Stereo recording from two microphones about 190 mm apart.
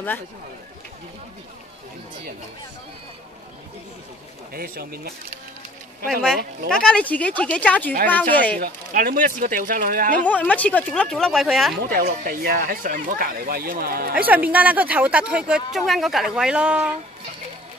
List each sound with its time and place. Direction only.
4.6 s speech: 50° right (ahead or behind)
6.0 s speech: 5° left (ahead or behind)
8.5 s speech: 50° right (ahead or behind)
10.2 s speech: 5° left (ahead or behind)
11.8 s speech: 50° right (ahead or behind)
14.1 s speech: 10° right (ahead or behind)